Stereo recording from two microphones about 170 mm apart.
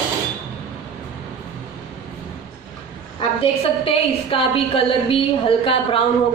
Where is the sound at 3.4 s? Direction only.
30° left (ahead or behind).